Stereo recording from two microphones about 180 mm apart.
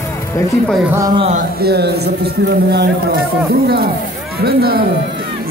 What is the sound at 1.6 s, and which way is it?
A man's voice, 65° right (ahead or behind).